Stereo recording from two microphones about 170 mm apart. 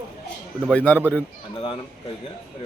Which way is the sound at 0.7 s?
10° left (ahead or behind).